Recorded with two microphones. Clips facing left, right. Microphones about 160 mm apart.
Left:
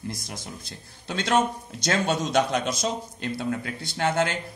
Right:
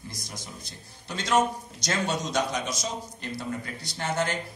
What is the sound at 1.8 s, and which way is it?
Speech, 60° left (ahead or behind).